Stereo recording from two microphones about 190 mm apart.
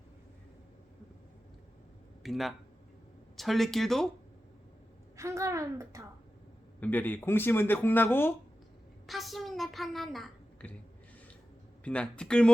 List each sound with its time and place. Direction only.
2.2 s speech: centre (ahead or behind)
5.1 s a woman's voice: 15° right (ahead or behind)
6.7 s speech: 10° left (ahead or behind)
9.0 s a woman's voice: centre (ahead or behind)
11.9 s speech: 5° left (ahead or behind)